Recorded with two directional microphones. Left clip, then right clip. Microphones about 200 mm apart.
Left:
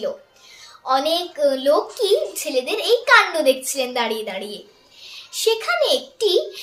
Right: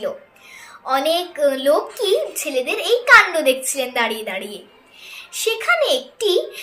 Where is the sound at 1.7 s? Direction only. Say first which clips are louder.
Even; 15° left (ahead or behind).